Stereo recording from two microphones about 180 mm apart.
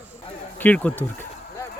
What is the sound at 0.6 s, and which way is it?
Speech, 10° left (ahead or behind).